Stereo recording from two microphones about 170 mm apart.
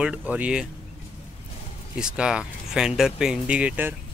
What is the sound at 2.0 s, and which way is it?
Speech, 5° right (ahead or behind).